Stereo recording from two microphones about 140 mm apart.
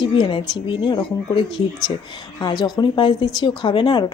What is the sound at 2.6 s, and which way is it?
A woman's voice, 35° left (ahead or behind).